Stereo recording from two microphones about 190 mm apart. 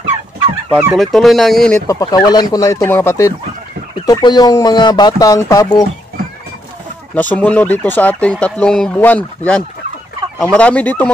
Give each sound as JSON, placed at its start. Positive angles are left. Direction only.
{"t": 0.7, "sound": "speech", "side_deg": -5}
{"t": 1.9, "sound": "speech", "side_deg": 20}
{"t": 7.2, "sound": "speech", "side_deg": 10}